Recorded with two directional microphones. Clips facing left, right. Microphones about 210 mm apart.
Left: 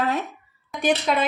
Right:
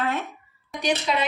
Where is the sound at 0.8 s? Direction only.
50° left (ahead or behind).